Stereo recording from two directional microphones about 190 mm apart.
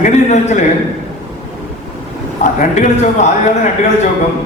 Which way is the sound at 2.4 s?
40° left (ahead or behind).